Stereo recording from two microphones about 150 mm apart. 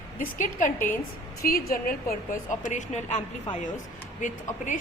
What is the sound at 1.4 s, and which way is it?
A woman's voice, 80° left.